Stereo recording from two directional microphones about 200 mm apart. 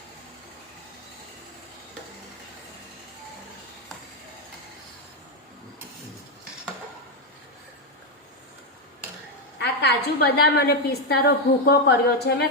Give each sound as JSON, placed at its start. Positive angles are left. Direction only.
{"t": 9.6, "sound": "a woman's voice", "side_deg": 55}